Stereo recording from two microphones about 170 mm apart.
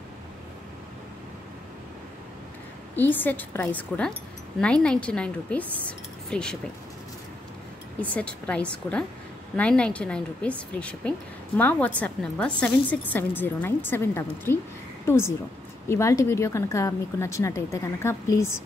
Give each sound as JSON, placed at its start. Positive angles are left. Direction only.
{"t": 3.0, "sound": "a woman's voice", "side_deg": 10}
{"t": 8.0, "sound": "a woman's voice", "side_deg": 10}